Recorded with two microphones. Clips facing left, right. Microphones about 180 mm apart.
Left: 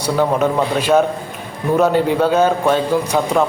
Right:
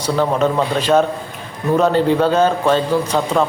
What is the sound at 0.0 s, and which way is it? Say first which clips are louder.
A man's voice: even; 10° left (ahead or behind).